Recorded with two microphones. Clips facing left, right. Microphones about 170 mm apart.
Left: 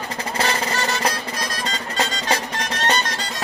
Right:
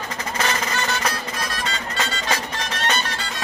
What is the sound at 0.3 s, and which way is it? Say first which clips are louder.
Music: left 2 dB; 30° left (ahead or behind).